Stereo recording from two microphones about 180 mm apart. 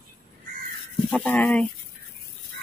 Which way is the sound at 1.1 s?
5° left (ahead or behind).